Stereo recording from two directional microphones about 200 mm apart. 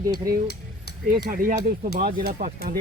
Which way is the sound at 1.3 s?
45° right (ahead or behind).